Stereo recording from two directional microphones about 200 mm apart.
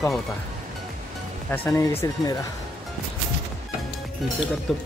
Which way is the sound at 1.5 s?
10° left (ahead or behind).